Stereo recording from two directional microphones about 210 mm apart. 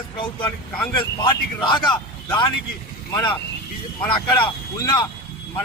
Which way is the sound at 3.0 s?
15° left (ahead or behind).